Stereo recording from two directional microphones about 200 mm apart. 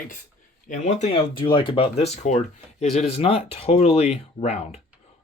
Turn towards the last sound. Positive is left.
turn(degrees=35)  # may be behind; listen again after turning